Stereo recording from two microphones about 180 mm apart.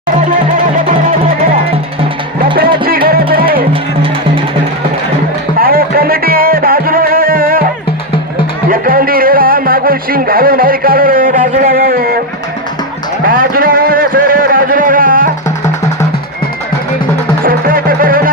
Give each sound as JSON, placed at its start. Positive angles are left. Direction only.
{"t": 0.3, "sound": "music", "side_deg": -45}
{"t": 2.8, "sound": "music", "side_deg": -55}
{"t": 3.7, "sound": "music", "side_deg": -30}
{"t": 5.5, "sound": "music", "side_deg": -55}
{"t": 8.7, "sound": "music", "side_deg": -50}
{"t": 13.2, "sound": "music", "side_deg": -50}
{"t": 17.4, "sound": "music", "side_deg": -55}